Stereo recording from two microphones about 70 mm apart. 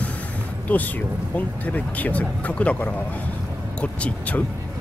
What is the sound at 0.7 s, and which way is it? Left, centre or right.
Speech, left.